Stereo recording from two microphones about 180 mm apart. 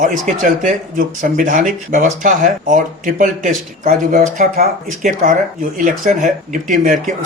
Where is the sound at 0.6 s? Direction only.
50° right (ahead or behind).